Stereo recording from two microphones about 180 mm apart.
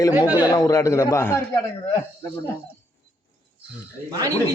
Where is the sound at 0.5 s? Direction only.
20° left (ahead or behind).